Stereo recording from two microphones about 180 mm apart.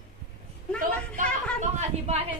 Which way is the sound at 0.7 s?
45° right (ahead or behind).